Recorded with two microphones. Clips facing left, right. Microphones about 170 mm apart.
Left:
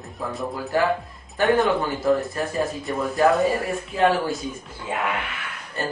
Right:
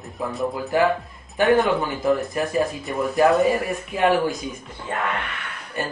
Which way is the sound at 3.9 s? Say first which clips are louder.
Left 1 dB; 15° right (ahead or behind).